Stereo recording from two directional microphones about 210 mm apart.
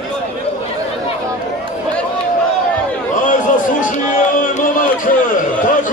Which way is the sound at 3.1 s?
40° left (ahead or behind).